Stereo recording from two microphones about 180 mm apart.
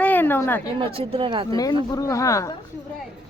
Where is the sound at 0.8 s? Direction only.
30° right (ahead or behind).